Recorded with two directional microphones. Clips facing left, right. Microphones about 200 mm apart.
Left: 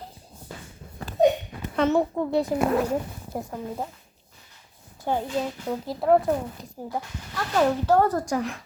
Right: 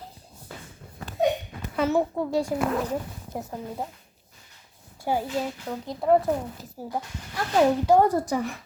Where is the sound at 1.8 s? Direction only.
5° right (ahead or behind).